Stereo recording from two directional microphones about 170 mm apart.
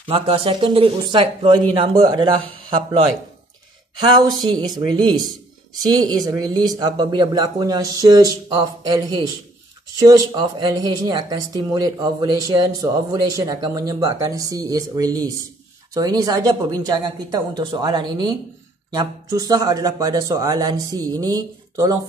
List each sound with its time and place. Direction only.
0.0 s speech: 30° right (ahead or behind)
4.5 s speech: 25° right (ahead or behind)
5.2 s a sound: centre (ahead or behind)
5.9 s speech: 25° right (ahead or behind)